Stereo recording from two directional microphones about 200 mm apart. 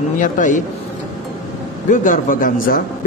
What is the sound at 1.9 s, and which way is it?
Speech, 40° left (ahead or behind).